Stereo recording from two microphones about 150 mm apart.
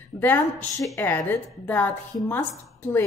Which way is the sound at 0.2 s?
15° left (ahead or behind).